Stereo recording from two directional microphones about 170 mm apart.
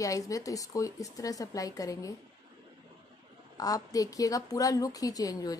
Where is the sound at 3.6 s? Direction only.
20° left (ahead or behind).